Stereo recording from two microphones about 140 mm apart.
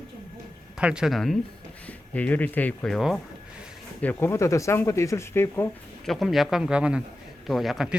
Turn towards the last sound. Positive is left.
turn(degrees=0)  # may be behind; listen again after turning